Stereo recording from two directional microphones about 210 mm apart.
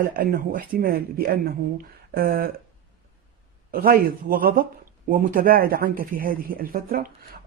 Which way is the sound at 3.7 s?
45° right (ahead or behind).